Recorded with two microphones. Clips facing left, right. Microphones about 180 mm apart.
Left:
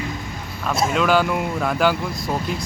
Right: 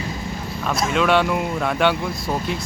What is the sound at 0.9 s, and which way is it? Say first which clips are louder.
Speech: right 1 dB; centre (ahead or behind).